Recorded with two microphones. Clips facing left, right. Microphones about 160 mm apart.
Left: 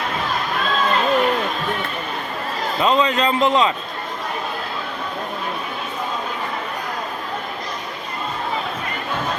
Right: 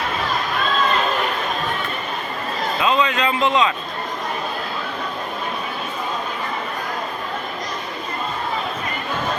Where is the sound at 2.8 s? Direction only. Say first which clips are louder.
Left 2 dB; 25° left (ahead or behind).